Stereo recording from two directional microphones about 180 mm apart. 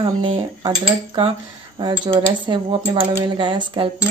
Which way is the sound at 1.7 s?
25° right (ahead or behind).